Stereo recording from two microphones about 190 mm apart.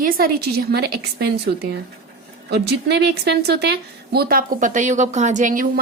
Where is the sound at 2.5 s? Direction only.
60° right (ahead or behind).